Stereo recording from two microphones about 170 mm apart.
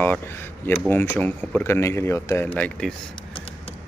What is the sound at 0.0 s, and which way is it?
Speech, 10° left (ahead or behind).